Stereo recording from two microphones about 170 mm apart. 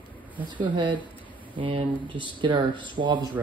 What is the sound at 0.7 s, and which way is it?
Speech, 30° right (ahead or behind).